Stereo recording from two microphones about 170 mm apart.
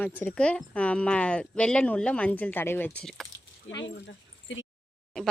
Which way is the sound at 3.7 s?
90° left.